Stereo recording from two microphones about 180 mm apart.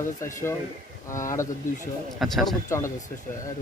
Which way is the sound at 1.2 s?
15° left (ahead or behind).